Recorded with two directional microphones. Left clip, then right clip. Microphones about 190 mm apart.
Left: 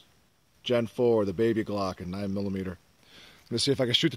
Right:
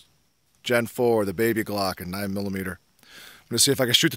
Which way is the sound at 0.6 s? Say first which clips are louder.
Right 3 dB; 15° right (ahead or behind).